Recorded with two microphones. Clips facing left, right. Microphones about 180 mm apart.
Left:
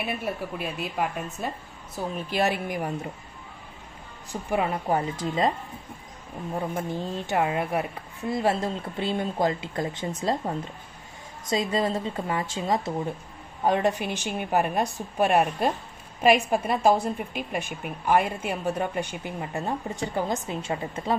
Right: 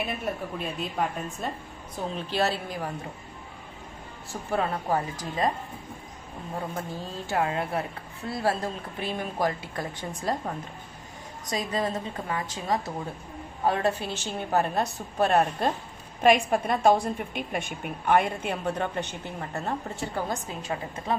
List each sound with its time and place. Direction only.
0.2 s a woman's voice: 5° left (ahead or behind)
4.3 s a woman's voice: 15° left (ahead or behind)
6.9 s a woman's voice: 20° left (ahead or behind)